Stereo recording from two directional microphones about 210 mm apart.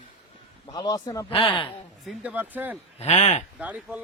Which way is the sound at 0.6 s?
20° left (ahead or behind).